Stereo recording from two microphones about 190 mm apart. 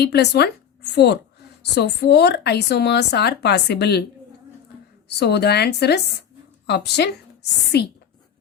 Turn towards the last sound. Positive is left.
turn(degrees=60)  # may be behind; listen again after turning